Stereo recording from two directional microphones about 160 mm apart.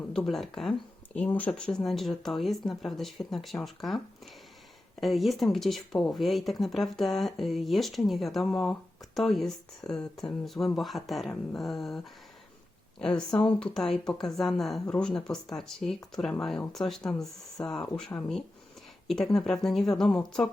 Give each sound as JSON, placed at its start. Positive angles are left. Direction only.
{"t": 0.1, "sound": "speech", "side_deg": 0}
{"t": 13.0, "sound": "speech", "side_deg": 5}